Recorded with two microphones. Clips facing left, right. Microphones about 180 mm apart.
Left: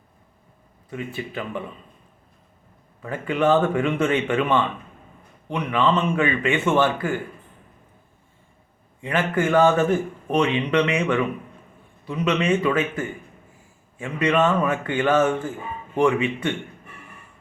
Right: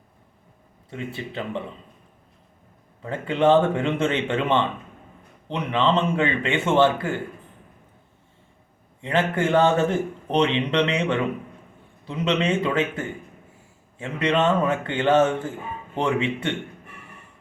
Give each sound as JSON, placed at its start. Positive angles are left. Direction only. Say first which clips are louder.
{"t": 0.9, "sound": "a man's voice", "louder": "left 1 dB", "side_deg": -25}
{"t": 3.0, "sound": "a man's voice", "louder": "right 1 dB", "side_deg": -25}
{"t": 9.0, "sound": "a man's voice", "louder": "even", "side_deg": -25}